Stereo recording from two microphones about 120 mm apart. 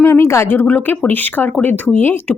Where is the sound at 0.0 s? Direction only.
25° left (ahead or behind).